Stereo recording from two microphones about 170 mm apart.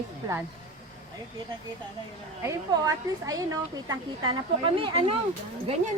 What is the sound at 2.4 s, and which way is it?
A woman's voice, 20° right (ahead or behind).